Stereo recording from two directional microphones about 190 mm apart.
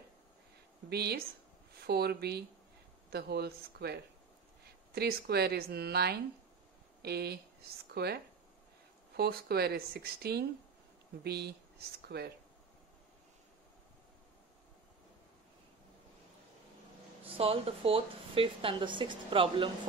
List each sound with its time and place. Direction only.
0.8 s speech: 55° right (ahead or behind)
17.2 s speech: 30° right (ahead or behind)